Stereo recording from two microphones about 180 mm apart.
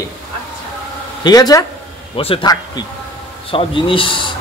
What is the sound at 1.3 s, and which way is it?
A man's voice, 20° left (ahead or behind).